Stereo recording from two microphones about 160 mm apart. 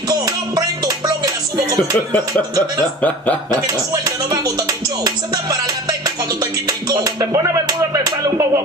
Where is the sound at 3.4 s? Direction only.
25° right (ahead or behind).